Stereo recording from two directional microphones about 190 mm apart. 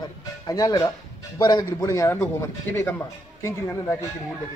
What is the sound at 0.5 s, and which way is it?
Speech, 20° left (ahead or behind).